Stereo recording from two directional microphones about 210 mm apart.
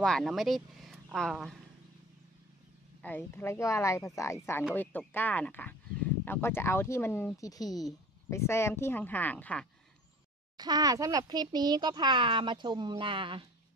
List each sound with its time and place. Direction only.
0.0 s speech: centre (ahead or behind)
3.0 s speech: 10° left (ahead or behind)
10.6 s speech: 20° right (ahead or behind)